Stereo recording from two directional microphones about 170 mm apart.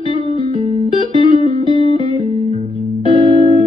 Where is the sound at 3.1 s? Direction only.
30° right (ahead or behind).